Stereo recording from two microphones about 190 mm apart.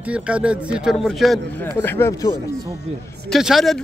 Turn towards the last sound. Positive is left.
turn(degrees=0)  # may be behind; listen again after turning